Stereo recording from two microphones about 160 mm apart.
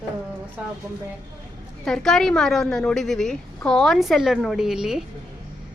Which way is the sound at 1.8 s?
5° left (ahead or behind).